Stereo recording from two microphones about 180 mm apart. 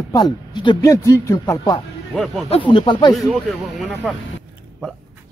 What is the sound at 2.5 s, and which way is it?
Speech, 25° left (ahead or behind).